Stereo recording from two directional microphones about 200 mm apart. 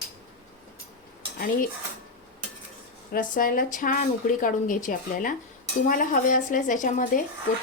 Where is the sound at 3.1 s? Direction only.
45° left (ahead or behind).